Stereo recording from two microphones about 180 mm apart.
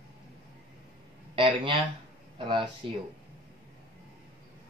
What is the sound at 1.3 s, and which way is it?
Speech, 30° right (ahead or behind).